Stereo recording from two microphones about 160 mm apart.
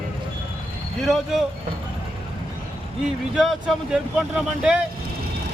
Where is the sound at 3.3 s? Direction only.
Centre (ahead or behind).